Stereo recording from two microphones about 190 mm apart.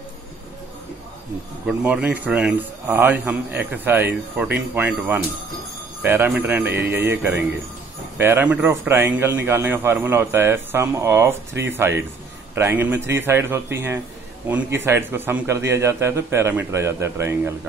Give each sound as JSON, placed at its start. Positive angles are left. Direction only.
{"t": 1.7, "sound": "a man's voice", "side_deg": -5}